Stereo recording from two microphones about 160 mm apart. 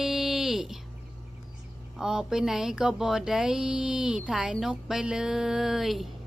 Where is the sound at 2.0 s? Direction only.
5° right (ahead or behind).